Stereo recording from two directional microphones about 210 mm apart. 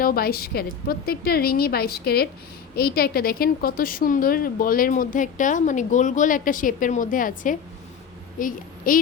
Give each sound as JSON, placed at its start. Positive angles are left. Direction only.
{"t": 0.0, "sound": "a woman's voice", "side_deg": 45}